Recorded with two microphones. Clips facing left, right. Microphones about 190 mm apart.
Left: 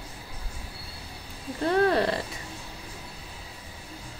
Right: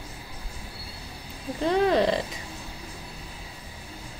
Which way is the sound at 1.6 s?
15° right (ahead or behind).